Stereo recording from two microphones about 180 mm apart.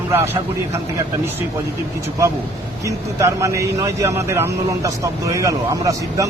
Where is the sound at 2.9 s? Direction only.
15° right (ahead or behind).